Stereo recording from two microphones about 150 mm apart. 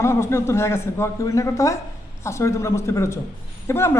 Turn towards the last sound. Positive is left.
turn(degrees=15)  # may be behind; listen again after turning